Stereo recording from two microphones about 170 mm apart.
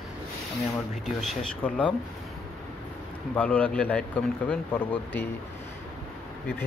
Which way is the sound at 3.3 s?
10° left (ahead or behind).